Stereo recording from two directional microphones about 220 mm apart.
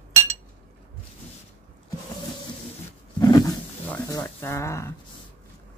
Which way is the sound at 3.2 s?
15° left (ahead or behind).